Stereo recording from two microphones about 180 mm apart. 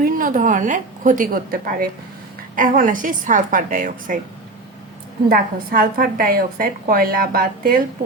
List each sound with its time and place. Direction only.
0.0 s a woman's voice: 50° right (ahead or behind)
5.3 s a woman's voice: 50° right (ahead or behind)